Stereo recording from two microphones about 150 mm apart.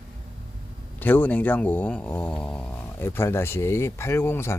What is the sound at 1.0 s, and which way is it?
Speech, 10° left (ahead or behind).